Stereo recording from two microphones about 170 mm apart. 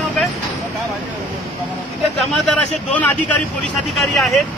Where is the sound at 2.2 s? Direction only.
5° left (ahead or behind).